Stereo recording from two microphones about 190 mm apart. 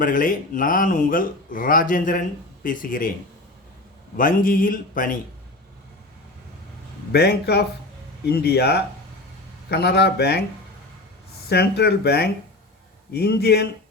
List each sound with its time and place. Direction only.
0.0 s speech: 45° left (ahead or behind)
4.2 s speech: 45° left (ahead or behind)
7.1 s speech: 60° left (ahead or behind)
11.4 s speech: 60° left (ahead or behind)